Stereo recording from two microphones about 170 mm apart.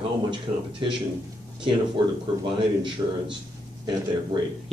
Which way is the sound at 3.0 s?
20° right (ahead or behind).